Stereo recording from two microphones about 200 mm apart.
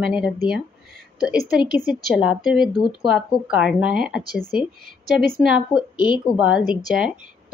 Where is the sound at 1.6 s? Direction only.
45° right (ahead or behind).